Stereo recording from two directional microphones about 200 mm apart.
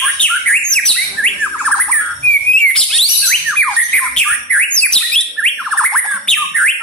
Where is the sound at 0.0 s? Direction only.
5° left (ahead or behind).